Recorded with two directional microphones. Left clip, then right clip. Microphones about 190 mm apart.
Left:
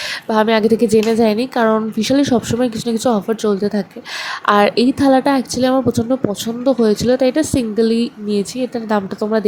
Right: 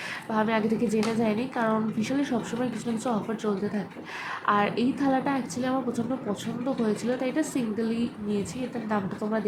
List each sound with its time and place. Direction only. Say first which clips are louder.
0.3 s a woman's voice: left 13 dB; 40° left (ahead or behind)